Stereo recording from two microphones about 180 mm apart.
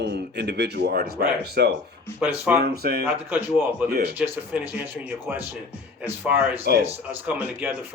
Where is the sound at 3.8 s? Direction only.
5° right (ahead or behind).